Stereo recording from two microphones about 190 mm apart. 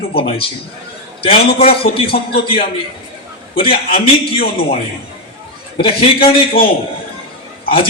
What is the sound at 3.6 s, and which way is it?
A man's voice, 50° left (ahead or behind).